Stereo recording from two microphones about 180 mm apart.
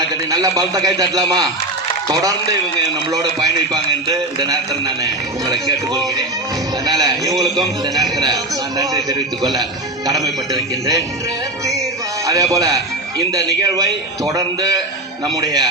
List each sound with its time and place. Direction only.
0.3 s a man's voice: 20° right (ahead or behind)
3.1 s a man's voice: 20° right (ahead or behind)
12.2 s a man's voice: 20° right (ahead or behind)